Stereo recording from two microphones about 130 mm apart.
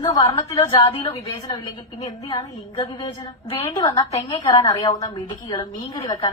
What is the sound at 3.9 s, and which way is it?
A woman's voice, 25° left (ahead or behind).